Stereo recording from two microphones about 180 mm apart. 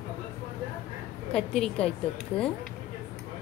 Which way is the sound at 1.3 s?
5° left (ahead or behind).